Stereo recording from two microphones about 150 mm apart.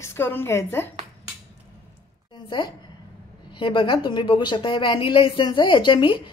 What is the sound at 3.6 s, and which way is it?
A woman's voice, 35° left (ahead or behind).